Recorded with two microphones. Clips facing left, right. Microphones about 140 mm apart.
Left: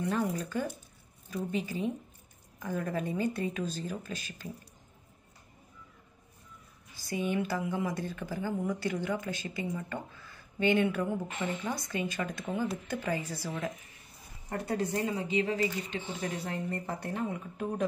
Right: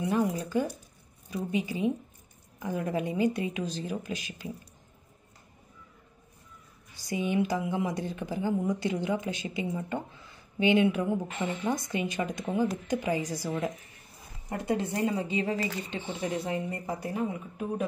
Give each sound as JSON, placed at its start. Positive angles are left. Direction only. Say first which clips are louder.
{"t": 0.0, "sound": "speech", "louder": "right 3 dB", "side_deg": -10}
{"t": 7.0, "sound": "a woman's voice", "louder": "right 3 dB", "side_deg": -15}
{"t": 14.5, "sound": "a woman's voice", "louder": "right 2 dB", "side_deg": -20}
{"t": 16.4, "sound": "speech", "louder": "right 3 dB", "side_deg": -15}